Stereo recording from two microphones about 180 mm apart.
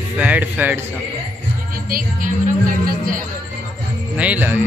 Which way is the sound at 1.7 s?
50° right (ahead or behind).